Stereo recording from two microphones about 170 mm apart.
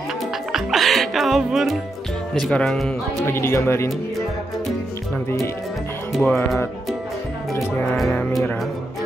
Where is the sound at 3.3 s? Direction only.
15° left (ahead or behind).